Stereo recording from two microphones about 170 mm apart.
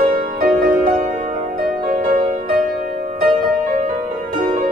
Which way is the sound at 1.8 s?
50° right (ahead or behind).